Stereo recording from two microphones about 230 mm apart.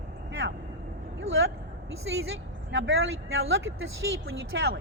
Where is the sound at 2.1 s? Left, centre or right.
Right.